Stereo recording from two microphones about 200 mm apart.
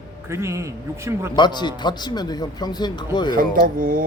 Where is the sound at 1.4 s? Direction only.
20° left (ahead or behind).